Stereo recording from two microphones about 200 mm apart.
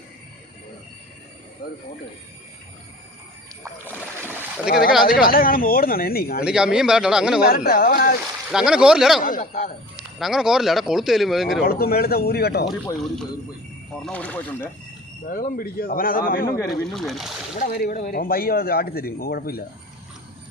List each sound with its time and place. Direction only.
3.6 s rowboat: 10° right (ahead or behind)
4.7 s speech: 50° left (ahead or behind)
6.4 s speech: 5° right (ahead or behind)
7.4 s speech: 50° left (ahead or behind)
8.5 s speech: 5° right (ahead or behind)
9.2 s speech: 40° left (ahead or behind)
10.2 s speech: centre (ahead or behind)
11.6 s speech: 50° left (ahead or behind)
14.0 s speech: 5° left (ahead or behind)
15.3 s speech: 45° left (ahead or behind)
16.6 s speech: centre (ahead or behind)
17.6 s speech: 50° left (ahead or behind)